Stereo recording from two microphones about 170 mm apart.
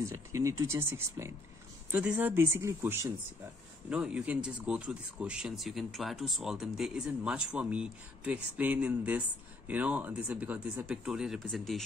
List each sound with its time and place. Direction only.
0.0 s speech: 20° right (ahead or behind); by 11.8 s centre (ahead or behind)